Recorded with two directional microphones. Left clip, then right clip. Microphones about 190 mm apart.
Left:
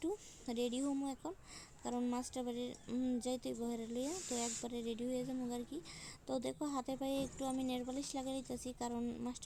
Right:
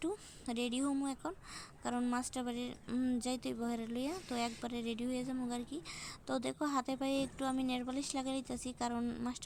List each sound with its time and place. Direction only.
0.0 s a woman's voice: 25° right (ahead or behind)